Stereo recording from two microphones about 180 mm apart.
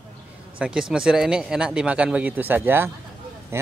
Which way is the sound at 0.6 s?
5° right (ahead or behind).